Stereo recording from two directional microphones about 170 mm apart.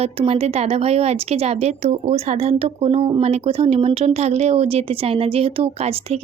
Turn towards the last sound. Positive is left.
turn(degrees=-35)  # may be behind; listen again after turning